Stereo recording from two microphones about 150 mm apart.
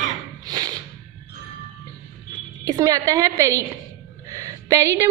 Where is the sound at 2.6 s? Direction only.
25° right (ahead or behind).